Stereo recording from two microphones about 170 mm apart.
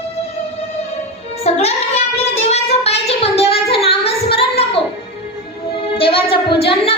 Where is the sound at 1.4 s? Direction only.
35° left (ahead or behind).